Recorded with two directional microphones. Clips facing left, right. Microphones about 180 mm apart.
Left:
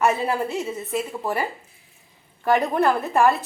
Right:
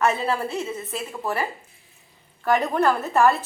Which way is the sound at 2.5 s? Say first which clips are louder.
Left 1 dB; 15° left (ahead or behind).